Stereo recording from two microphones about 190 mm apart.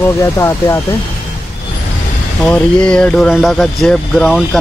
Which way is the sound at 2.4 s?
5° left (ahead or behind).